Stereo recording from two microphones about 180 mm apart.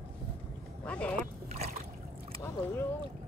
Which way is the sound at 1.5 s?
35° right (ahead or behind).